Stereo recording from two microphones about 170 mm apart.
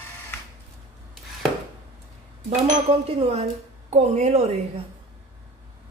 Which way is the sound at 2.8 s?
40° right (ahead or behind).